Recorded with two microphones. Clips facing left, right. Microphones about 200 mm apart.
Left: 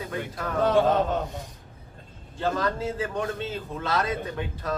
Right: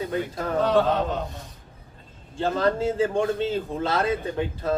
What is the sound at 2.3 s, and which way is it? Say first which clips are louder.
A man's voice: right 4 dB; 30° right (ahead or behind).